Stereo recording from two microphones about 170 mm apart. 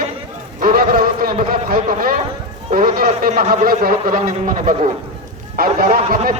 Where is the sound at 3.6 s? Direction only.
60° right (ahead or behind).